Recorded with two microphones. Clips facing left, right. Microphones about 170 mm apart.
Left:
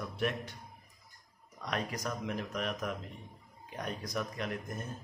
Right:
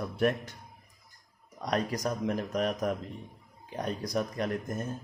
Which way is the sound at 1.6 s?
40° right (ahead or behind).